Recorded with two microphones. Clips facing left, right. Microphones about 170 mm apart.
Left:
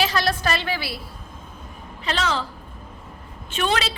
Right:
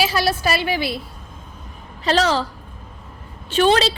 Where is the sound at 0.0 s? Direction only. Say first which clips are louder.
Right 3 dB; 10° right (ahead or behind).